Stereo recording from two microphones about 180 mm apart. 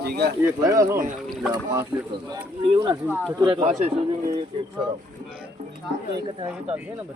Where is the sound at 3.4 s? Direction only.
30° right (ahead or behind).